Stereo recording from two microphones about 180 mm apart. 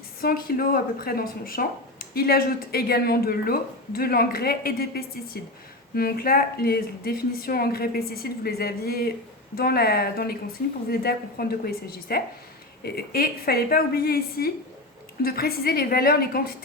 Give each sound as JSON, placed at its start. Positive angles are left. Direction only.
{"t": 0.2, "sound": "speech", "side_deg": 55}